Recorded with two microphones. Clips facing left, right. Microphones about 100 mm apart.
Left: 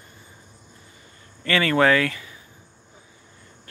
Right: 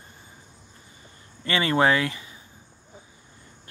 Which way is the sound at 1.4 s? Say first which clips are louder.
Left 2 dB; 20° right (ahead or behind).